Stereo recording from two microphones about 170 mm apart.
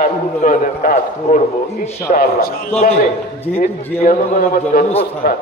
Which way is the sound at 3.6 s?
60° left (ahead or behind).